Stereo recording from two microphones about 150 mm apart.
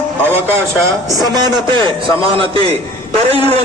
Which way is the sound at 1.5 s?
30° right (ahead or behind).